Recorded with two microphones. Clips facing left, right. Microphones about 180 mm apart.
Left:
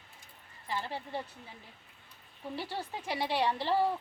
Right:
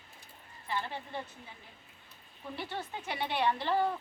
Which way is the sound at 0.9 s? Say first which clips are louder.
Left 2 dB; 35° left (ahead or behind).